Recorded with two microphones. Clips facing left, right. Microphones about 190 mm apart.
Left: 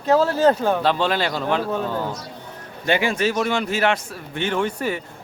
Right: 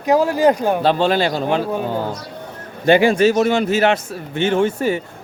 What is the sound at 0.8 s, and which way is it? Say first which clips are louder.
Speech: right 4 dB; 35° right (ahead or behind).